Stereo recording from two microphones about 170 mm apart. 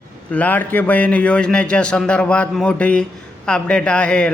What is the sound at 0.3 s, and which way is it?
A man's voice, 10° left (ahead or behind).